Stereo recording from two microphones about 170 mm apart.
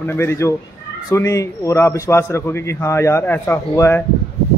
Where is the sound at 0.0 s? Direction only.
15° left (ahead or behind).